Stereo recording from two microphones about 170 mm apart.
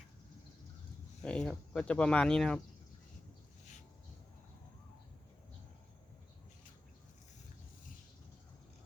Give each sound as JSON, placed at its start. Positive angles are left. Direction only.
{"t": 1.2, "sound": "speech", "side_deg": 5}